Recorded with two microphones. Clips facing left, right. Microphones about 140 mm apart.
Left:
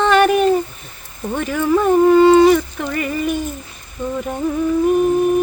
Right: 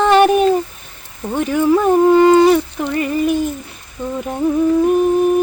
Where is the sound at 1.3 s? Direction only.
15° right (ahead or behind).